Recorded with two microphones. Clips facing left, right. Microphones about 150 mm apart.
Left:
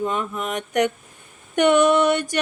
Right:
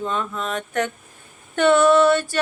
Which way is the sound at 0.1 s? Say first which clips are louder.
Even; 15° left (ahead or behind).